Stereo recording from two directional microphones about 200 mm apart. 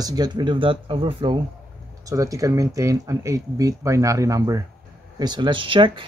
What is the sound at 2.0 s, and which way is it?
Speech, 15° right (ahead or behind).